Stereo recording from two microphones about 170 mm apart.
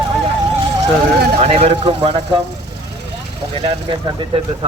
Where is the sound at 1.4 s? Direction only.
35° right (ahead or behind).